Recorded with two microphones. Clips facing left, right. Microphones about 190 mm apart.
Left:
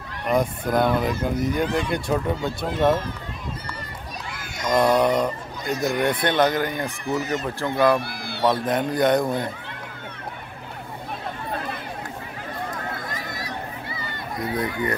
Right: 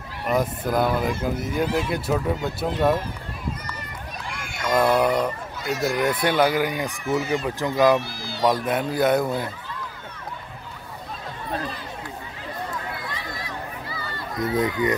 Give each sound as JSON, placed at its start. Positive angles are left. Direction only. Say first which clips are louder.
{"t": 0.3, "sound": "speech", "louder": "left 1 dB", "side_deg": -5}
{"t": 4.6, "sound": "speech", "louder": "left 1 dB", "side_deg": -5}
{"t": 7.1, "sound": "speech", "louder": "right 2 dB", "side_deg": 0}
{"t": 7.4, "sound": "speech", "louder": "right 1 dB", "side_deg": -15}
{"t": 8.0, "sound": "run", "louder": "left 1 dB", "side_deg": 60}
{"t": 8.6, "sound": "speech", "louder": "left 1 dB", "side_deg": -5}
{"t": 12.7, "sound": "a sound", "louder": "left 1 dB", "side_deg": 45}
{"t": 13.8, "sound": "a sound", "louder": "even", "side_deg": 25}
{"t": 14.5, "sound": "speech", "louder": "right 3 dB", "side_deg": -20}